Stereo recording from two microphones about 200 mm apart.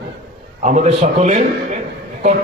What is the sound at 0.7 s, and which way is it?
A man's voice, 35° right (ahead or behind).